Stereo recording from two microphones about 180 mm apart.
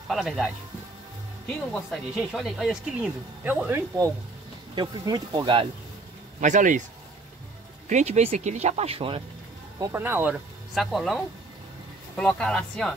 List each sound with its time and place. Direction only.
0.1 s speech: centre (ahead or behind)
1.7 s speech: centre (ahead or behind); by 5.7 s 25° right (ahead or behind)
6.4 s speech: 45° right (ahead or behind)
7.9 s speech: 35° right (ahead or behind)
9.8 s speech: 15° right (ahead or behind)
10.7 s speech: centre (ahead or behind)